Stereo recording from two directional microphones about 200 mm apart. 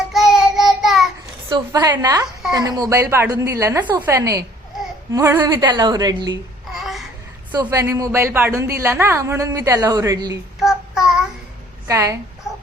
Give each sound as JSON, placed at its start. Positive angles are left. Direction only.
{"t": 0.1, "sound": "child singing", "side_deg": 0}
{"t": 1.5, "sound": "a woman's voice", "side_deg": -20}
{"t": 6.7, "sound": "babbling", "side_deg": 0}
{"t": 7.5, "sound": "a woman's voice", "side_deg": -20}
{"t": 10.6, "sound": "child singing", "side_deg": 0}
{"t": 11.9, "sound": "a woman's voice", "side_deg": -15}